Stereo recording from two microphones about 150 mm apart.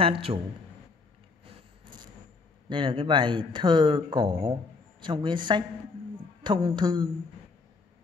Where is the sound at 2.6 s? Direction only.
30° right (ahead or behind).